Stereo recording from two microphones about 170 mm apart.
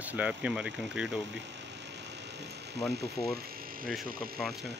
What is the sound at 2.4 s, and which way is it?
Speech, 75° right (ahead or behind).